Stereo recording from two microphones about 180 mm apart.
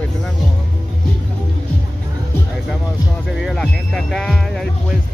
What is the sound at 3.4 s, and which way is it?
Speech, 5° left (ahead or behind).